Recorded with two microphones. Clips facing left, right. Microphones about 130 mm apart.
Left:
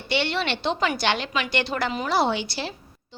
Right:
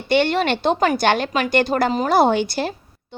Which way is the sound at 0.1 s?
50° right (ahead or behind).